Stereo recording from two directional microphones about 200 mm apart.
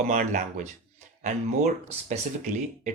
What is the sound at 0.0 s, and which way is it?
Speech, 40° right (ahead or behind).